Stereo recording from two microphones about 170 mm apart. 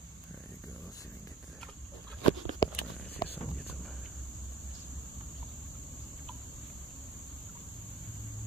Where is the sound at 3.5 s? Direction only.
Centre (ahead or behind).